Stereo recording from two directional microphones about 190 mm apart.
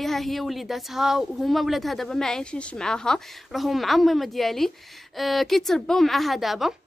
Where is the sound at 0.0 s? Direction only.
Centre (ahead or behind).